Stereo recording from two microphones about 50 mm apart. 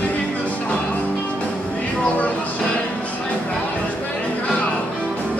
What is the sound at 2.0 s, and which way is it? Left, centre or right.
Music, left.